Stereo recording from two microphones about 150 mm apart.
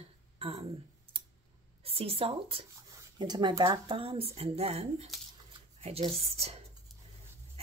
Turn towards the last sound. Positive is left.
turn(degrees=-40)  # may be behind; listen again after turning